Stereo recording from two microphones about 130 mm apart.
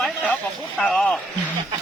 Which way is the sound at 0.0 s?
Centre (ahead or behind).